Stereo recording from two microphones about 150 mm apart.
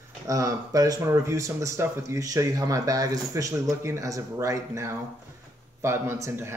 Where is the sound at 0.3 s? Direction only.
20° right (ahead or behind).